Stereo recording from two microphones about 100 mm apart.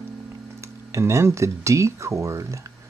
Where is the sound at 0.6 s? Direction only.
30° right (ahead or behind).